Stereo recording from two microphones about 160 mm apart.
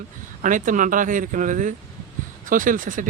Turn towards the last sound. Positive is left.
turn(degrees=-55)  # may be behind; listen again after turning